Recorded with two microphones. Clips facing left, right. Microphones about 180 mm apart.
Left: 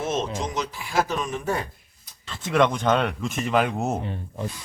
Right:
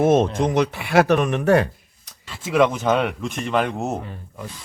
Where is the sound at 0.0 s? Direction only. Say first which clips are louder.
Right 10 dB; 55° right (ahead or behind); by 1.6 s 70° right (ahead or behind).